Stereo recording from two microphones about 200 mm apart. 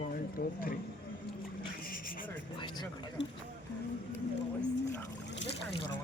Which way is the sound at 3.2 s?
65° left (ahead or behind).